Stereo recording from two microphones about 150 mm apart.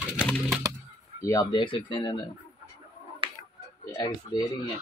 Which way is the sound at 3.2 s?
35° right (ahead or behind).